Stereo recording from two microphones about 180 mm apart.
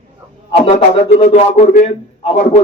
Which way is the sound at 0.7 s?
35° left (ahead or behind).